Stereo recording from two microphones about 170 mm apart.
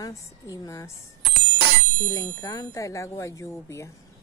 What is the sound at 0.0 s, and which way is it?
Speech, 20° left (ahead or behind).